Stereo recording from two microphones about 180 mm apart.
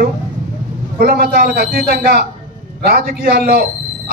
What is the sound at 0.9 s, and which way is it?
A man's voice, 60° right (ahead or behind).